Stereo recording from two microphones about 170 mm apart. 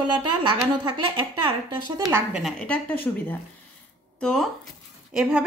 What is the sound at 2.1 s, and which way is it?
A woman's voice, centre (ahead or behind).